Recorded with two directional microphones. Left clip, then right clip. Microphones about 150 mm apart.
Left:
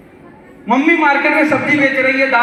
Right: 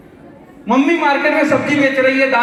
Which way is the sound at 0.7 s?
25° right (ahead or behind).